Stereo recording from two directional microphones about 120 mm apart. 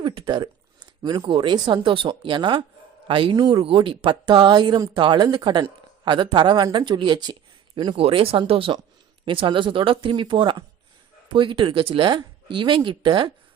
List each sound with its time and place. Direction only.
0.0 s speech: 40° right (ahead or behind)
7.9 s speech: 50° right (ahead or behind)